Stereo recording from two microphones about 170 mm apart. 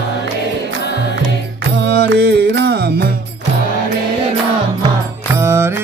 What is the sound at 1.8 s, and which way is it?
Music, 85° right.